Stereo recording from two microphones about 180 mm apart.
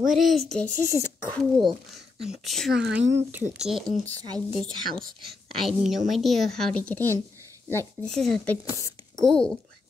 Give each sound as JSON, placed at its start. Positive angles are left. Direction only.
{"t": 0.0, "sound": "speech", "side_deg": 0}
{"t": 0.9, "sound": "speech", "side_deg": 15}
{"t": 2.2, "sound": "speech", "side_deg": 0}
{"t": 8.1, "sound": "speech", "side_deg": 0}
{"t": 8.6, "sound": "speech", "side_deg": 20}
{"t": 9.1, "sound": "a child's voice", "side_deg": 5}